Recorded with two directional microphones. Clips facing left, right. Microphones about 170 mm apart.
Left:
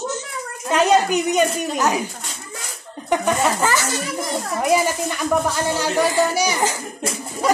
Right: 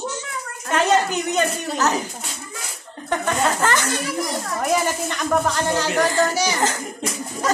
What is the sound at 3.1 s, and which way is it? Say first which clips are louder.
Speech: left 2 dB; 10° left (ahead or behind).